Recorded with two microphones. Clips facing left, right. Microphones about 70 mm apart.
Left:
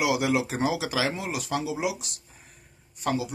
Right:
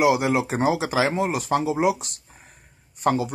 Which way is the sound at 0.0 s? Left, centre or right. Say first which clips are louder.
Right 5 dB; right.